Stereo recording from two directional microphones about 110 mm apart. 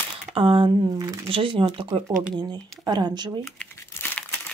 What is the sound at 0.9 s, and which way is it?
Speech, 35° right (ahead or behind).